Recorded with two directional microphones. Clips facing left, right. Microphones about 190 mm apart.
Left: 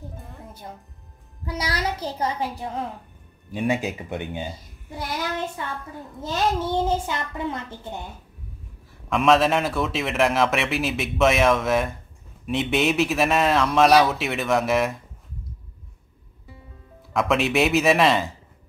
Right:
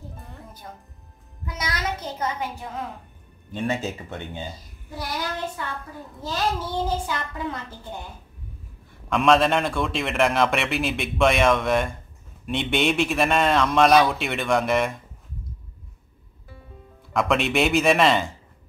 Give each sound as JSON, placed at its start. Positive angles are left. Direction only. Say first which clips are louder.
{"t": 1.4, "sound": "a woman's voice", "louder": "left 3 dB", "side_deg": 30}
{"t": 3.5, "sound": "speech", "louder": "left 2 dB", "side_deg": 15}
{"t": 6.2, "sound": "a child's voice", "louder": "left 3 dB", "side_deg": 25}
{"t": 9.1, "sound": "a man's voice", "louder": "even", "side_deg": 0}
{"t": 17.1, "sound": "a man's voice", "louder": "left 1 dB", "side_deg": 0}